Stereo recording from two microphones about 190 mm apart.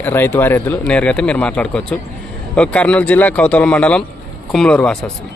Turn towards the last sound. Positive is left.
turn(degrees=5)  # may be behind; listen again after turning